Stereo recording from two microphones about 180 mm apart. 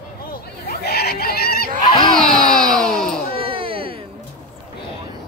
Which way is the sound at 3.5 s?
30° right (ahead or behind).